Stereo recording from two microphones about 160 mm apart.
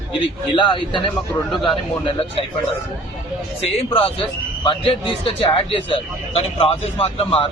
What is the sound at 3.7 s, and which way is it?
A man's voice, 35° left (ahead or behind).